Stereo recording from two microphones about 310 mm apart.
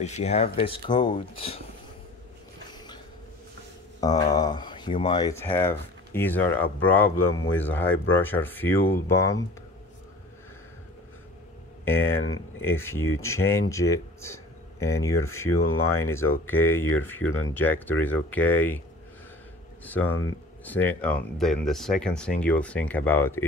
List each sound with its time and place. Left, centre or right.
0.0 s speech: left
4.0 s speech: centre
11.8 s speech: centre
12.2 s speech: left
12.6 s speech: centre
19.8 s speech: centre